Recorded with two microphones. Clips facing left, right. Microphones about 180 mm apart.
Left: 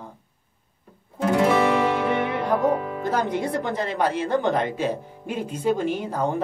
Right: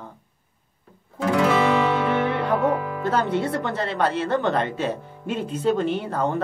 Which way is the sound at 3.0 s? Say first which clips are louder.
Right 2 dB; 15° left (ahead or behind).